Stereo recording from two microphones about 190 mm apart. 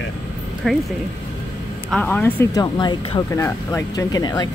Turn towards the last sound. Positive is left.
turn(degrees=20)  # may be behind; listen again after turning